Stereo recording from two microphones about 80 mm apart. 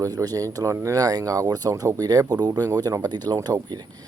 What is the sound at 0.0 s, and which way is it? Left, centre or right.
Speech, right.